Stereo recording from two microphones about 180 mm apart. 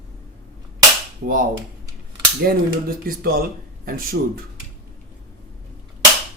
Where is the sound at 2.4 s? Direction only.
55° right (ahead or behind).